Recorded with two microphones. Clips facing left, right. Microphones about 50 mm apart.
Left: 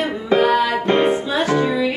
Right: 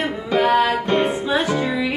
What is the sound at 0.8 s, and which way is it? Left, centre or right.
Music, left.